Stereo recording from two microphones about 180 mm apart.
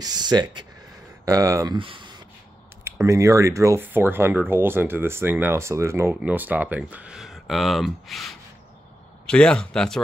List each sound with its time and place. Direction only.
0.0 s speech: 25° right (ahead or behind)
1.8 s a sound: 30° right (ahead or behind)
3.0 s speech: 15° right (ahead or behind); by 10.0 s 5° left (ahead or behind)